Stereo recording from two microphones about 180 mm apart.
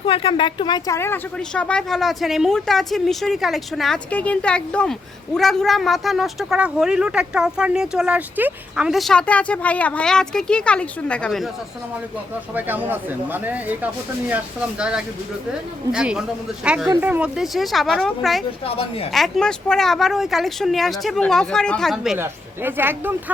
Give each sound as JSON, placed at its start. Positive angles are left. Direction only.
{"t": 0.0, "sound": "speech", "side_deg": 30}
{"t": 12.5, "sound": "speech", "side_deg": -10}
{"t": 18.6, "sound": "a woman's voice", "side_deg": 30}
{"t": 19.1, "sound": "speech", "side_deg": 0}